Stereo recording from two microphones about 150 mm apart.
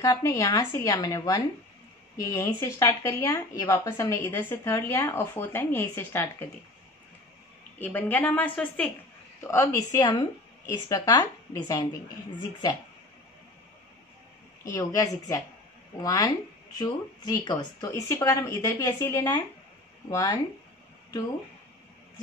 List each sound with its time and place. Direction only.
0.0 s speech: 20° left (ahead or behind)
7.8 s a woman's voice: 10° left (ahead or behind)
14.7 s speech: 25° left (ahead or behind)